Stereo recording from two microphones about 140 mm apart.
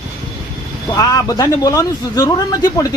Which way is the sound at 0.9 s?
25° left (ahead or behind).